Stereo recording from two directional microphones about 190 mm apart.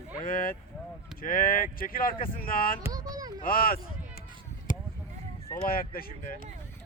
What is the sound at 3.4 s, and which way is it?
Speech, 50° left (ahead or behind).